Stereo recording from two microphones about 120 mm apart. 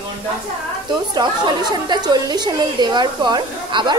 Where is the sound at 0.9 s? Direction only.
40° right (ahead or behind).